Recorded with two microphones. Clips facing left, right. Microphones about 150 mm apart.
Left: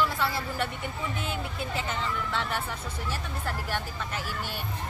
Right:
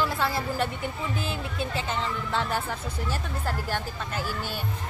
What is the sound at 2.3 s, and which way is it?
Speech, 40° right (ahead or behind).